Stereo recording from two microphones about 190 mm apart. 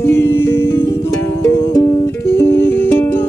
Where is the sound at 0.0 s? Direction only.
10° left (ahead or behind).